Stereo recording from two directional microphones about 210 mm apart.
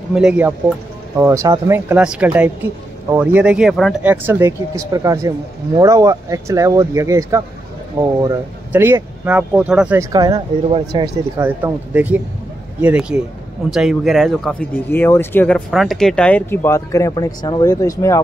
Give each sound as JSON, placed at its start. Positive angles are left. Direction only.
{"t": 0.1, "sound": "speech", "side_deg": -5}
{"t": 10.1, "sound": "speech", "side_deg": -20}